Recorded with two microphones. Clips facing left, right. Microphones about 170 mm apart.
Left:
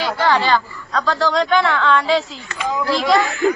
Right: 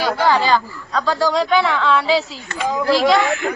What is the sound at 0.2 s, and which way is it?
Speech, 10° right (ahead or behind).